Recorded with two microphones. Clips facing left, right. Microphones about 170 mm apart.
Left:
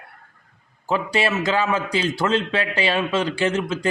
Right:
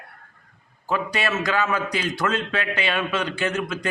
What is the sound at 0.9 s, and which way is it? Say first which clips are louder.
A man's voice: left 3 dB; 25° left (ahead or behind).